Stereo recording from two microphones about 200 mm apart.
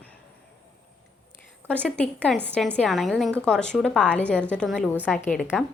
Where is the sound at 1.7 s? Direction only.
5° left (ahead or behind).